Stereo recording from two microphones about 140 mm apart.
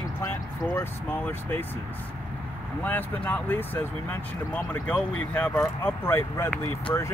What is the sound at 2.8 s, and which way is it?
Speech, 10° left (ahead or behind).